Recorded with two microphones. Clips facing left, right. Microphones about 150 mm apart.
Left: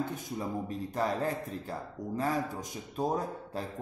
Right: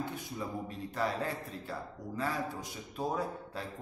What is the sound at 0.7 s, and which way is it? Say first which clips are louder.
A man's voice: left 2 dB; 45° left (ahead or behind).